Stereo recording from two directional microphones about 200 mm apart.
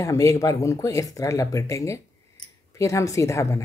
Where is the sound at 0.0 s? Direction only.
15° left (ahead or behind).